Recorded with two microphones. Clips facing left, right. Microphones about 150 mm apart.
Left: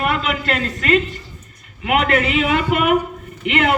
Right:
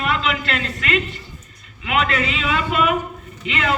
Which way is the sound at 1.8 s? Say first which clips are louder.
Left 4 dB; 55° left (ahead or behind).